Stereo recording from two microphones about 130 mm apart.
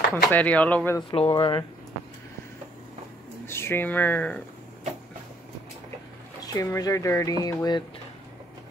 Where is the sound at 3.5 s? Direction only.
20° left (ahead or behind).